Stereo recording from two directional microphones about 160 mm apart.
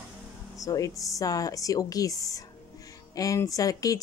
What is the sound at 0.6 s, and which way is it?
Speech, 20° left (ahead or behind).